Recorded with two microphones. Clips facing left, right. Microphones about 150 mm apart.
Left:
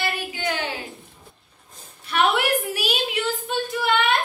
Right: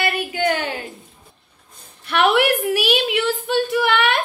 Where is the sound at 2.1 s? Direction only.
65° right (ahead or behind).